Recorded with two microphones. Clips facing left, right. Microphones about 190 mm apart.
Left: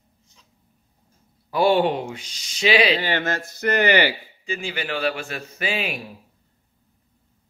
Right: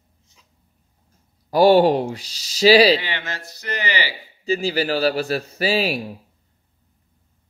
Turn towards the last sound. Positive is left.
turn(degrees=-35)  # may be behind; listen again after turning